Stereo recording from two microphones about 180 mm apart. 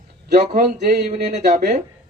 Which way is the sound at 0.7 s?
60° right (ahead or behind).